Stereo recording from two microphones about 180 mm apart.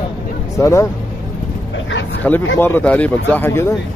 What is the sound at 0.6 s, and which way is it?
Speech, 15° left (ahead or behind).